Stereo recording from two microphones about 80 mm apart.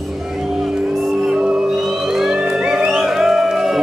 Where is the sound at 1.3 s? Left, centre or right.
Centre.